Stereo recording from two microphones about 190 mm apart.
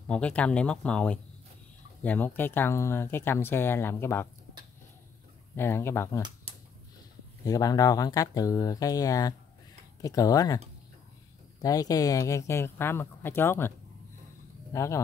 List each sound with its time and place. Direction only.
0.1 s speech: 5° left (ahead or behind)
5.6 s speech: 15° left (ahead or behind)
7.4 s speech: 20° left (ahead or behind)
11.6 s speech: 20° left (ahead or behind)